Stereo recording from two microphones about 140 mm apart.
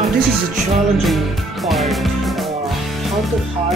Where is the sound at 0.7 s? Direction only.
Centre (ahead or behind).